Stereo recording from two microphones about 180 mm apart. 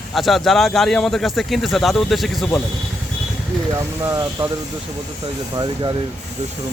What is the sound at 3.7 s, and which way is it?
Speech, 20° right (ahead or behind).